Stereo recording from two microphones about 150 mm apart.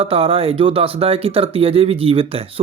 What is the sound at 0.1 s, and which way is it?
Speech, 40° right (ahead or behind).